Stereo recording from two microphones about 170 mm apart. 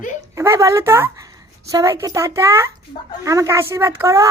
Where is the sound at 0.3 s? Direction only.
15° right (ahead or behind).